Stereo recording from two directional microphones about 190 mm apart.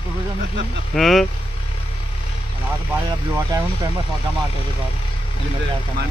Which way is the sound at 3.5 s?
20° right (ahead or behind).